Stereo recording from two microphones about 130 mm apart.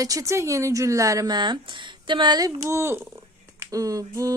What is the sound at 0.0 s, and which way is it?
Speech, 25° right (ahead or behind).